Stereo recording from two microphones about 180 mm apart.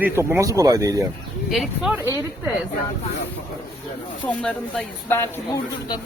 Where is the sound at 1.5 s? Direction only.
Centre (ahead or behind).